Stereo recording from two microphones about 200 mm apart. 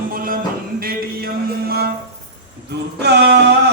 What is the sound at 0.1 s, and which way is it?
Music, 45° right (ahead or behind).